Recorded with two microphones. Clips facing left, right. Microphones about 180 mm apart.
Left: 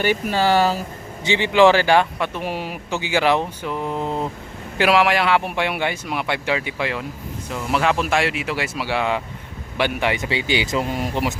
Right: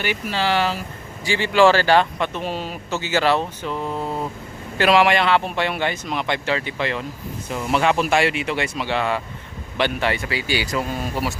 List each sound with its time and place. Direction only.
0.0 s speech: 45° left (ahead or behind)
1.2 s speech: 20° left (ahead or behind)
4.8 s speech: 5° left (ahead or behind)